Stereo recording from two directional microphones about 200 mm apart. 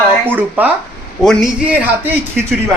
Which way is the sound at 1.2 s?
Centre (ahead or behind).